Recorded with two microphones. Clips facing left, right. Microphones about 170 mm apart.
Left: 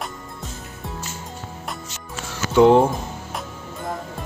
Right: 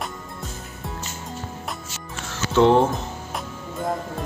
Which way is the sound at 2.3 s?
10° left (ahead or behind).